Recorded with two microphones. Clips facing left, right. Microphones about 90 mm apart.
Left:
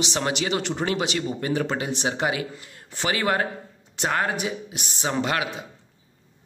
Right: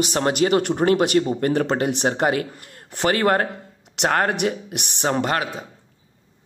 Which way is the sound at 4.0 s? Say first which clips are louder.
Right 5 dB; 60° right (ahead or behind).